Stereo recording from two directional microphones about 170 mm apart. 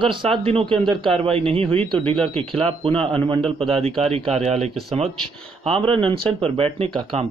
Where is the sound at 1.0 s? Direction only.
35° right (ahead or behind).